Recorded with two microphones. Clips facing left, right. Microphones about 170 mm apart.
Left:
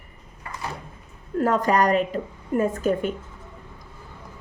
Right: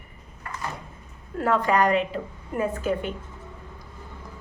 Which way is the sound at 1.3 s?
45° left (ahead or behind).